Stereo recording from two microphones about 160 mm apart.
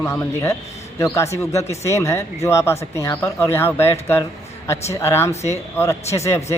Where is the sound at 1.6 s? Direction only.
45° left (ahead or behind).